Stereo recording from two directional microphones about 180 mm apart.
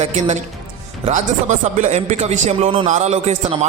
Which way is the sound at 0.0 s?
35° right (ahead or behind).